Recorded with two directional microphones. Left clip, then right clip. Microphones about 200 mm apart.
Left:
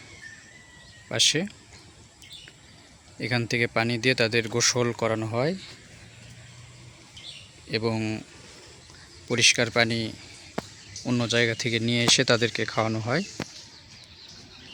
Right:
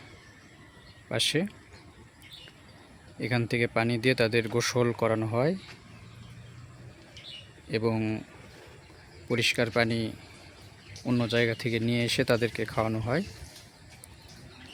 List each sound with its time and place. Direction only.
1.0 s speech: centre (ahead or behind)
3.2 s speech: centre (ahead or behind)
7.7 s speech: centre (ahead or behind)
9.3 s speech: 5° left (ahead or behind)